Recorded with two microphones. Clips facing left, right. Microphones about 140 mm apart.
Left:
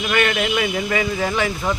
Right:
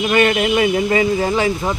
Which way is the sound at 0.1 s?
25° right (ahead or behind).